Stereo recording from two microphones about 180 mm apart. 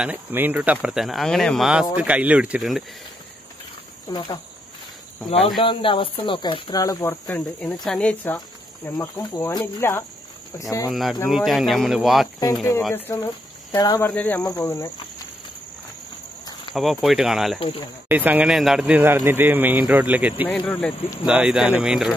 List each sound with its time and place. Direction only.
0.0 s speech: 10° right (ahead or behind)
4.1 s speech: 20° left (ahead or behind)
5.6 s speech: 30° left (ahead or behind); by 8.4 s 10° left (ahead or behind)
8.8 s speech: 20° left (ahead or behind)
10.9 s speech: centre (ahead or behind)
12.9 s speech: 15° left (ahead or behind)
14.1 s speech: 10° left (ahead or behind)
16.7 s speech: centre (ahead or behind)
17.6 s speech: 30° left (ahead or behind)
18.0 s speech: 10° right (ahead or behind)
20.4 s speech: 5° left (ahead or behind)
21.3 s speech: 5° right (ahead or behind)